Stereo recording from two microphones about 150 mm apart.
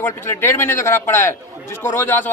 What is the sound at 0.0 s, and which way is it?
Speech, 15° left (ahead or behind).